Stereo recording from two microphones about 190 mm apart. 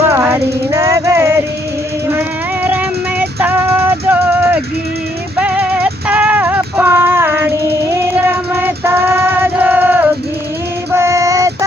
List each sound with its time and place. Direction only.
0.1 s music: 15° right (ahead or behind)
2.6 s music: 10° right (ahead or behind)
10.9 s female singing: 15° right (ahead or behind)